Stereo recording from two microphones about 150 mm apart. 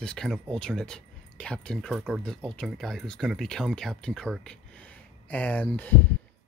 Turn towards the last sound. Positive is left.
turn(degrees=10)  # may be behind; listen again after turning